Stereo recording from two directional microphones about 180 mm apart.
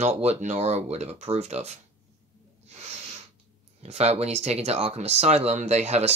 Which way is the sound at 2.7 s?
35° right (ahead or behind).